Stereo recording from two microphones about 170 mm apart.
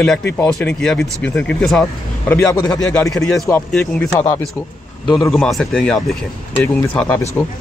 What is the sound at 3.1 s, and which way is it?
Speech, centre (ahead or behind).